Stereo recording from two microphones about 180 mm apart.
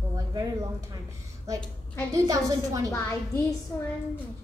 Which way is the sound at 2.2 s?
20° right (ahead or behind).